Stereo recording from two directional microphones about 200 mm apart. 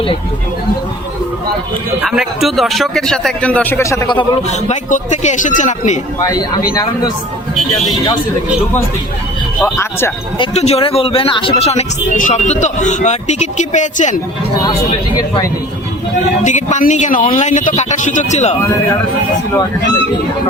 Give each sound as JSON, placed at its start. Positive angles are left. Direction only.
{"t": 2.0, "sound": "speech", "side_deg": 0}
{"t": 4.7, "sound": "speech", "side_deg": 35}
{"t": 9.6, "sound": "speech", "side_deg": 10}
{"t": 10.3, "sound": "speech", "side_deg": 30}
{"t": 16.4, "sound": "speech", "side_deg": 35}